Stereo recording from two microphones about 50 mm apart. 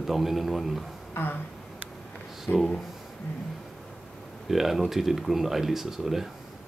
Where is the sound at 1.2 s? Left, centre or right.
Left.